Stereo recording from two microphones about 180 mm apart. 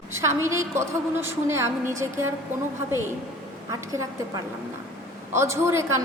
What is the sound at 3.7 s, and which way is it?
A woman's voice, 20° right (ahead or behind).